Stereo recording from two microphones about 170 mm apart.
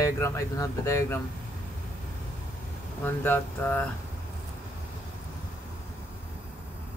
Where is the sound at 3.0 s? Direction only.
10° left (ahead or behind).